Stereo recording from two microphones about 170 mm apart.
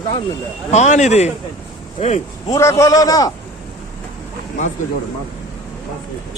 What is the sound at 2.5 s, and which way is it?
Speech, 15° left (ahead or behind).